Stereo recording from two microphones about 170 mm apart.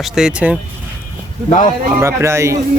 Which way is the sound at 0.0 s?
5° right (ahead or behind).